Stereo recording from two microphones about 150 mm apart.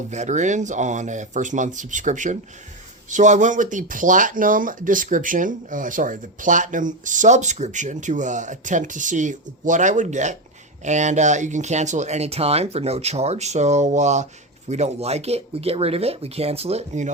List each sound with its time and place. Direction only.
0.1 s speech: 50° right (ahead or behind)